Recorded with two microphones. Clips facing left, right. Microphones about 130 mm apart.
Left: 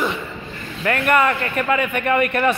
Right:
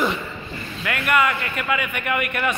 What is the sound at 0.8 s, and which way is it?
A man's voice, 35° left (ahead or behind).